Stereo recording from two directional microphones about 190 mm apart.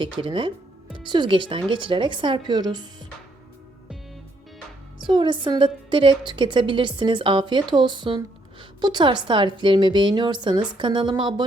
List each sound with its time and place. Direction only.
0.0 s a woman's voice: 25° right (ahead or behind)
5.0 s a woman's voice: 25° right (ahead or behind)